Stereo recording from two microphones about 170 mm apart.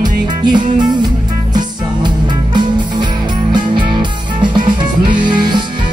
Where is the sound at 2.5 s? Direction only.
25° right (ahead or behind).